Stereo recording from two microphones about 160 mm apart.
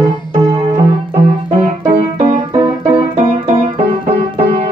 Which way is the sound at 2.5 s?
30° right (ahead or behind).